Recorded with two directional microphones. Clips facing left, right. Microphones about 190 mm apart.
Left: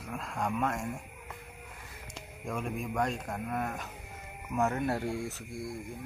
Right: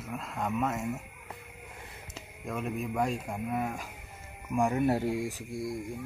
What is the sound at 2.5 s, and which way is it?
Speech, centre (ahead or behind).